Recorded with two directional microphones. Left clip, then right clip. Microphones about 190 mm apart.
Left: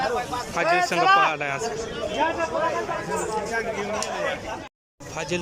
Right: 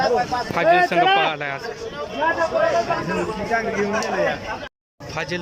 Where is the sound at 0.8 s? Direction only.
10° left (ahead or behind).